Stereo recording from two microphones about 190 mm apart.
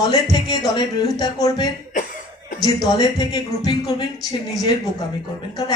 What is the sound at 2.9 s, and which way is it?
Speech, 20° left (ahead or behind).